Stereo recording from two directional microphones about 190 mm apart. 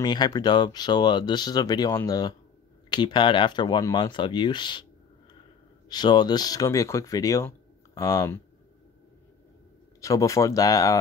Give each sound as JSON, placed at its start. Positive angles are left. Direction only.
{"t": 0.0, "sound": "speech", "side_deg": 20}
{"t": 5.9, "sound": "speech", "side_deg": 20}
{"t": 9.9, "sound": "speech", "side_deg": 15}